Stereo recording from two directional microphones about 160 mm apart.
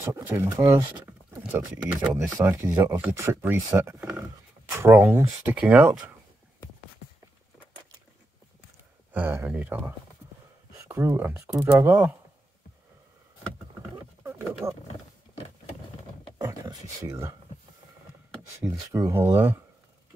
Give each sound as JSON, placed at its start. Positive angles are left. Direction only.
{"t": 0.0, "sound": "speech", "side_deg": -15}
{"t": 9.1, "sound": "speech", "side_deg": -10}
{"t": 14.2, "sound": "speech", "side_deg": -15}
{"t": 16.3, "sound": "speech", "side_deg": -20}
{"t": 18.6, "sound": "speech", "side_deg": -20}